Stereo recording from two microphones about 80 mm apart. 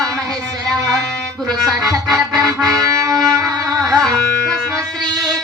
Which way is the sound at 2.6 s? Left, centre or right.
Right.